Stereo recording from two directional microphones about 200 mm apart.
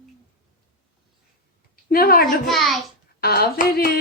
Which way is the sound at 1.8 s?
50° left (ahead or behind).